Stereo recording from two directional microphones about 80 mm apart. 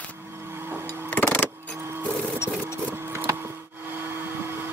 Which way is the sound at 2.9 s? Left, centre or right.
Right.